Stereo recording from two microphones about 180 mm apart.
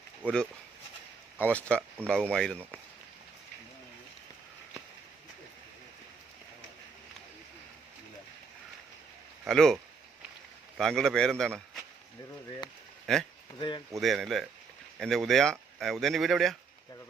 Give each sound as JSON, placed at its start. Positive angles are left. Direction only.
{"t": 0.2, "sound": "speech", "side_deg": -10}
{"t": 1.4, "sound": "speech", "side_deg": 10}
{"t": 9.4, "sound": "speech", "side_deg": 0}
{"t": 13.1, "sound": "speech", "side_deg": 0}
{"t": 13.6, "sound": "speech", "side_deg": 25}
{"t": 13.9, "sound": "speech", "side_deg": 0}